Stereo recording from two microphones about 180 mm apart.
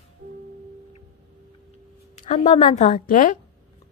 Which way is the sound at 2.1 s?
40° left (ahead or behind).